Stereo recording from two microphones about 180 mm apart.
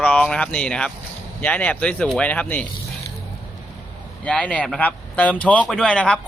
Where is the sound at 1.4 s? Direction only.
10° left (ahead or behind).